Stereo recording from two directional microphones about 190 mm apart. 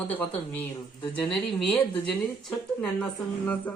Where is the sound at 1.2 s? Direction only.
5° left (ahead or behind).